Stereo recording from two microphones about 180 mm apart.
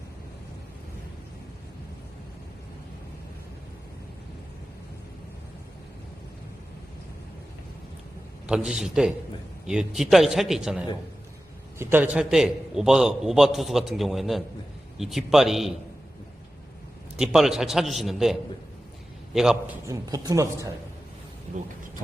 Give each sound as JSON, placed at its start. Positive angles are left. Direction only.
{"t": 8.4, "sound": "a man's voice", "side_deg": -5}
{"t": 17.2, "sound": "a man's voice", "side_deg": 0}
{"t": 19.9, "sound": "speech", "side_deg": -20}